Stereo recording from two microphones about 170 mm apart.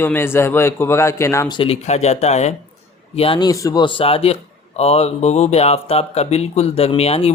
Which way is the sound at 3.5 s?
20° left (ahead or behind).